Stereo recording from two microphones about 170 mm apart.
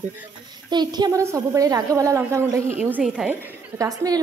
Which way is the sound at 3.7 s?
20° right (ahead or behind).